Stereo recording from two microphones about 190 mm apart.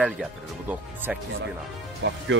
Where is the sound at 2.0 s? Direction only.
70° right (ahead or behind).